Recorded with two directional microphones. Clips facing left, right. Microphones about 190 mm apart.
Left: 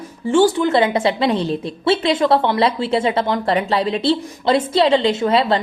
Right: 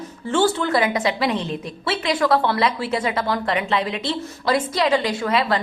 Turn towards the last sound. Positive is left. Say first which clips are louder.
# left 4 dB
turn(degrees=30)  # may be behind; listen again after turning